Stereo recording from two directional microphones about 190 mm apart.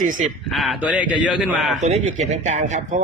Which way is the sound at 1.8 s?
35° right (ahead or behind).